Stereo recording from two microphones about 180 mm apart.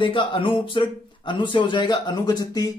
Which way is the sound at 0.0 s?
25° left (ahead or behind).